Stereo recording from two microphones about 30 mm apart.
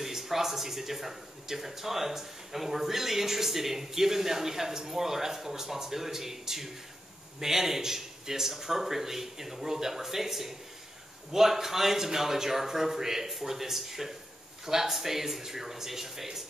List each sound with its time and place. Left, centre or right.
0.0 s speech: centre